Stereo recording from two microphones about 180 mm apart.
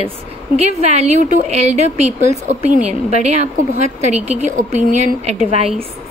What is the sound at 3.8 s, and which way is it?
A woman's voice, 40° right (ahead or behind).